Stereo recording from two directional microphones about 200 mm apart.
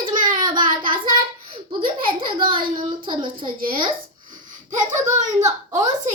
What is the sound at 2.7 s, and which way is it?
Speech, 25° right (ahead or behind).